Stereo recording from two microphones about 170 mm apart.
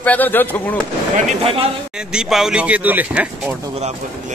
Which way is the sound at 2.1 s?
5° right (ahead or behind).